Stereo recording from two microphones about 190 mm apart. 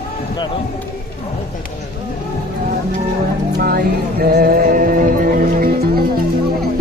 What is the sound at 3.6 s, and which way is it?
Music, 50° right (ahead or behind).